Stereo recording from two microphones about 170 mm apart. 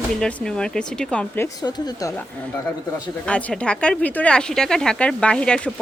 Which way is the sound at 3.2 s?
5° left (ahead or behind).